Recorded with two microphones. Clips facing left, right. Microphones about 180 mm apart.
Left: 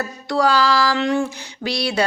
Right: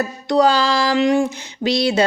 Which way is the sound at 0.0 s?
20° right (ahead or behind).